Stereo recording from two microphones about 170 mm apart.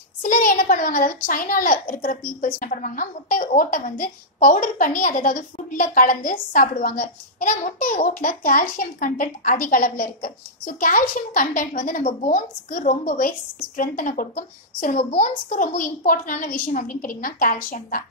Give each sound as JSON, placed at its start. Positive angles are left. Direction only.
{"t": 0.2, "sound": "a woman's voice", "side_deg": 50}